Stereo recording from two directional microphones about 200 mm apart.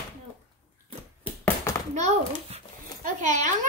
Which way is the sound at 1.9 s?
35° right (ahead or behind).